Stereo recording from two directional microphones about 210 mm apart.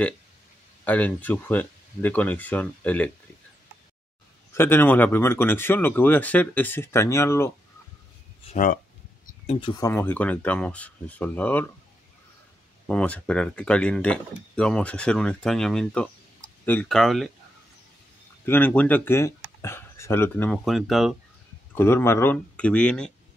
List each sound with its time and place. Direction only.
0.8 s speech: 5° left (ahead or behind)
4.6 s speech: 10° left (ahead or behind)
8.5 s speech: 40° left (ahead or behind)
9.6 s speech: 15° left (ahead or behind)
12.8 s speech: 5° left (ahead or behind)
18.4 s speech: 10° left (ahead or behind)
21.7 s speech: 10° left (ahead or behind)